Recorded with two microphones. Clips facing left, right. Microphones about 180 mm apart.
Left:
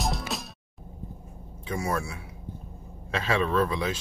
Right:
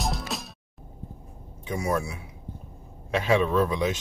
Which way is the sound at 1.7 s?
20° right (ahead or behind).